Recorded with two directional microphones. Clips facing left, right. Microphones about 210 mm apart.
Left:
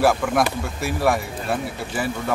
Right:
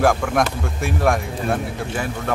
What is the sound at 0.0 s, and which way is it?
Speech, 5° left (ahead or behind).